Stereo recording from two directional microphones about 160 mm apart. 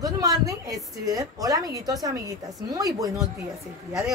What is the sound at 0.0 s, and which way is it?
A woman's voice, 20° right (ahead or behind).